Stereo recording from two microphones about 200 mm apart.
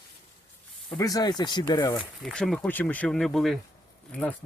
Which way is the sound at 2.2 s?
Centre (ahead or behind).